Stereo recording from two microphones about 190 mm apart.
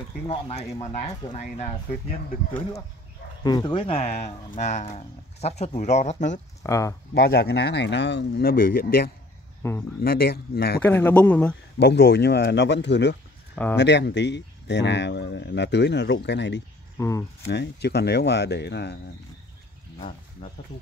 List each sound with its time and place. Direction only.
0.3 s speech: 30° left (ahead or behind)
3.4 s speech: 20° left (ahead or behind); by 6.4 s 40° left (ahead or behind)
6.6 s speech: 15° left (ahead or behind)
7.2 s speech: 55° left (ahead or behind)
9.6 s speech: 15° left (ahead or behind)
10.0 s speech: 55° left (ahead or behind)
10.8 s speech: 10° left (ahead or behind)
11.8 s speech: 60° left (ahead or behind)
17.0 s speech: 15° left (ahead or behind)
17.5 s speech: 60° left (ahead or behind)